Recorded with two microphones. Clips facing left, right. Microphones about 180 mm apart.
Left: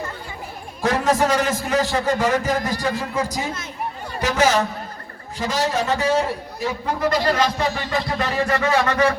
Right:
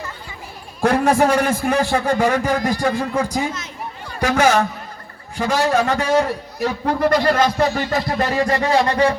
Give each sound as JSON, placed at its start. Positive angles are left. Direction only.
{"t": 0.8, "sound": "a man's voice", "side_deg": -55}